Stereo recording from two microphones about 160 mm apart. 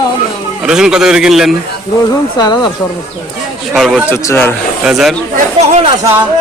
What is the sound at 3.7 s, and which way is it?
Speech, centre (ahead or behind).